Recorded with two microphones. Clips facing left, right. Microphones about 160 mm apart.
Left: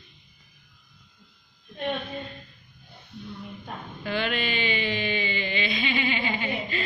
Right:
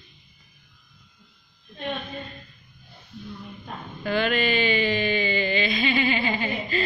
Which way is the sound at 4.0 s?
45° right (ahead or behind).